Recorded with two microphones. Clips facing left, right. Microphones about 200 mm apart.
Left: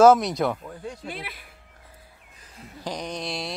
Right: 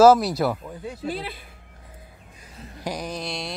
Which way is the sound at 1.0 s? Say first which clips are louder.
Right 6 dB; 30° right (ahead or behind).